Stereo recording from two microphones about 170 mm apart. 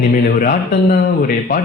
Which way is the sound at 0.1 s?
55° left (ahead or behind).